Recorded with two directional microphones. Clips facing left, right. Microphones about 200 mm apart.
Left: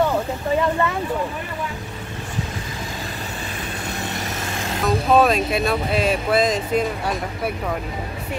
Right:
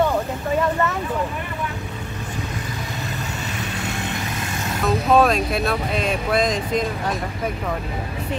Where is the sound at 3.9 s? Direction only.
45° left (ahead or behind).